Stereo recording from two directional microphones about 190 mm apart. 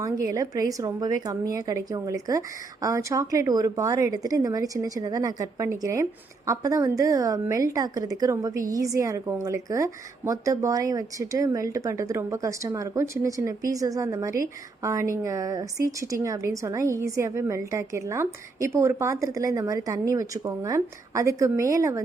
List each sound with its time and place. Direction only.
0.0 s a woman's voice: 15° right (ahead or behind)